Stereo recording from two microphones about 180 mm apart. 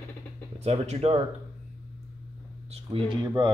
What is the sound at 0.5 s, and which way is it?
Speech, 35° right (ahead or behind).